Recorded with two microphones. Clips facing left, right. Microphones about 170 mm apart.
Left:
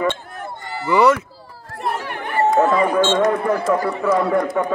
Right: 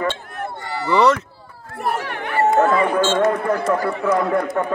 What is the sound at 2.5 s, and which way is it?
Speech, 5° right (ahead or behind).